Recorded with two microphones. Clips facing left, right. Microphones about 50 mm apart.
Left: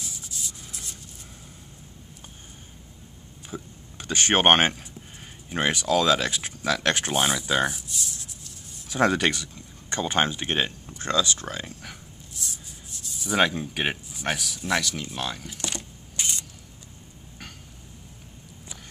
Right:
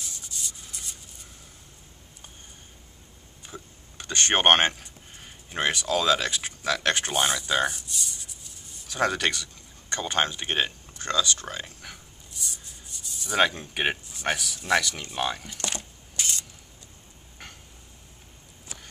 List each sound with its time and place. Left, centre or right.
0.0 s rub: centre
3.4 s speech: centre
10.9 s a sound: centre
15.1 s speech: centre
16.2 s mechanisms: left